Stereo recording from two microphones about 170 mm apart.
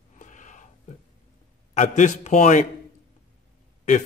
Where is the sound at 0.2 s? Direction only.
45° left (ahead or behind).